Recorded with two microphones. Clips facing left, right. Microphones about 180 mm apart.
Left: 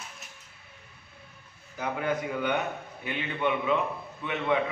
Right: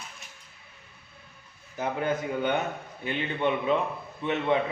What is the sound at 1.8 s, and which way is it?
A man's voice, 25° right (ahead or behind).